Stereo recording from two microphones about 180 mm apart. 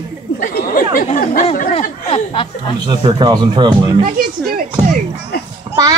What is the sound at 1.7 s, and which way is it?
Speech, 30° left (ahead or behind).